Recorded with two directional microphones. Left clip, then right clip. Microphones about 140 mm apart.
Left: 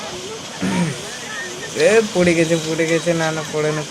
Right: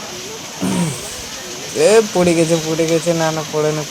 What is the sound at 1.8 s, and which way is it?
Speech, 25° right (ahead or behind).